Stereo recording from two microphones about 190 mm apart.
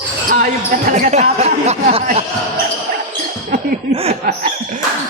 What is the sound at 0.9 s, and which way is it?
Speech, 40° right (ahead or behind).